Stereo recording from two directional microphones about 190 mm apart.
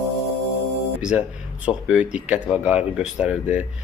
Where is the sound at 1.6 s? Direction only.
5° right (ahead or behind).